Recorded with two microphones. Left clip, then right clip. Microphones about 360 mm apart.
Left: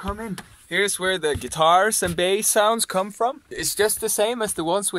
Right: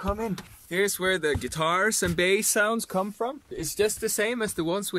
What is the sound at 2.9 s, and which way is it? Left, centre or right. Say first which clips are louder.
Speech: left 6 dB; left.